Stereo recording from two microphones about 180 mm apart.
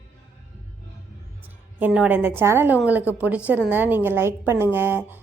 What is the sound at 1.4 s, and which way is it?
A woman's voice, 10° right (ahead or behind).